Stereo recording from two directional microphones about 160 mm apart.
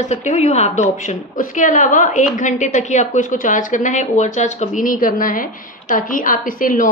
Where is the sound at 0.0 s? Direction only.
50° left (ahead or behind).